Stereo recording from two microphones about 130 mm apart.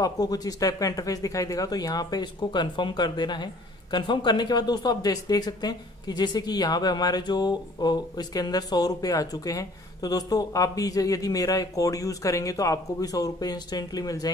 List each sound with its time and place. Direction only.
0.0 s speech: 30° left (ahead or behind)